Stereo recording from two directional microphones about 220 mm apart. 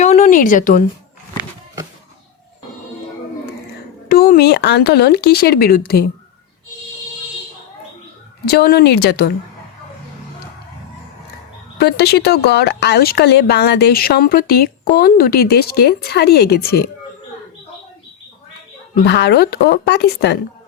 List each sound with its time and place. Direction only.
0.0 s speech: 30° left (ahead or behind)
4.1 s speech: 40° left (ahead or behind)
8.4 s speech: 45° left (ahead or behind)
11.8 s speech: 50° left (ahead or behind)
18.9 s speech: 50° left (ahead or behind)